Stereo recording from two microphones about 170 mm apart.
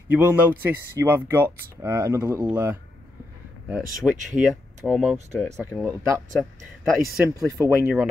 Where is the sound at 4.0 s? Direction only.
Centre (ahead or behind).